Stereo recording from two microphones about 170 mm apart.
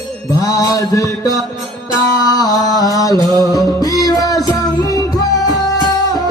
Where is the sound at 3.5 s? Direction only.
20° left (ahead or behind).